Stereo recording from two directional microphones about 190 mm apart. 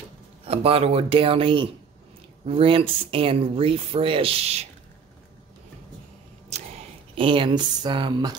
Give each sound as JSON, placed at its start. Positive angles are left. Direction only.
{"t": 0.5, "sound": "speech", "side_deg": -30}
{"t": 7.2, "sound": "speech", "side_deg": -25}